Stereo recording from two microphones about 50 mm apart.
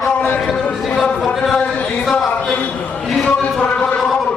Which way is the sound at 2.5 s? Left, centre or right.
Left.